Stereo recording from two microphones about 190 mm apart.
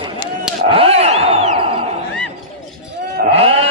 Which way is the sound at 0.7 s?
30° right (ahead or behind).